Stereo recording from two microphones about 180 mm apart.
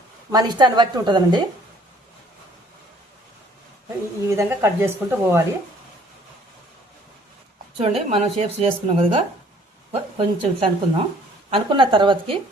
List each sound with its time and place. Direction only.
0.3 s a woman's voice: 20° right (ahead or behind)
4.3 s speech: 15° right (ahead or behind)
7.8 s a woman's voice: 35° right (ahead or behind)